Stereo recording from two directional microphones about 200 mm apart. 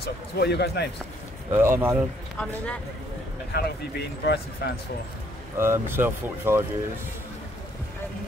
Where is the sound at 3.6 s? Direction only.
50° left (ahead or behind).